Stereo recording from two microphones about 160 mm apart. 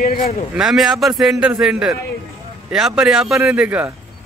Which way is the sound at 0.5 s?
Centre (ahead or behind).